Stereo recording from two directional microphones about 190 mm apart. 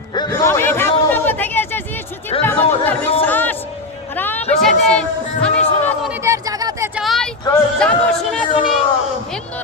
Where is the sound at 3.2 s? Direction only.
10° left (ahead or behind).